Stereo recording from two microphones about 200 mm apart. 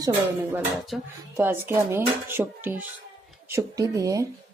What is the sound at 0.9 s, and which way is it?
Speech, centre (ahead or behind).